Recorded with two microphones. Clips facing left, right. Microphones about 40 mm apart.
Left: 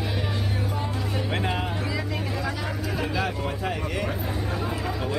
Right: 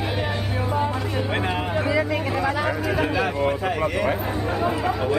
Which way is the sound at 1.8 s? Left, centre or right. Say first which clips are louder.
Right 8 dB; right.